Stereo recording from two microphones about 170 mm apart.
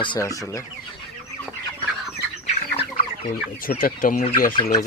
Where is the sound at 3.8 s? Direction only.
55° left (ahead or behind).